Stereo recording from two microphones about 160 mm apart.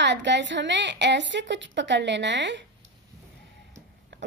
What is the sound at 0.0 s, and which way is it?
A woman's voice, 90° right.